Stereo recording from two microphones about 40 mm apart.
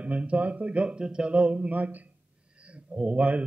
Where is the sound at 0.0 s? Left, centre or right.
Right.